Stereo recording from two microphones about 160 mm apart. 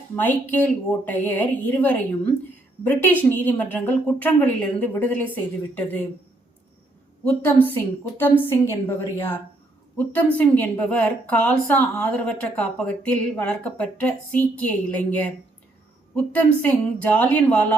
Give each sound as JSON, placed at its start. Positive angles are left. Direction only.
{"t": 0.2, "sound": "a woman's voice", "side_deg": 10}
{"t": 7.4, "sound": "a woman's voice", "side_deg": 10}